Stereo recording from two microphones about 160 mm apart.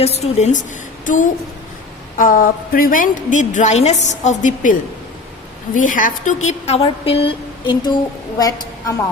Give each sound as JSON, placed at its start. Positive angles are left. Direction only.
{"t": 0.0, "sound": "a woman's voice", "side_deg": 40}